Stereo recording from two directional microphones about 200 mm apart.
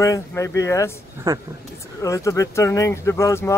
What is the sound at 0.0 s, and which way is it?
Speech, 15° left (ahead or behind).